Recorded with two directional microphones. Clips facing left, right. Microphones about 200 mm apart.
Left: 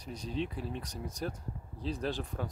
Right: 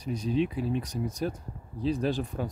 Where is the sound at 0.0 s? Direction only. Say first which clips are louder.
Right 9 dB; 10° right (ahead or behind).